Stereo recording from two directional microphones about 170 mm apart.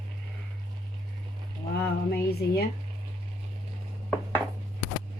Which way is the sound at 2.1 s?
70° left (ahead or behind).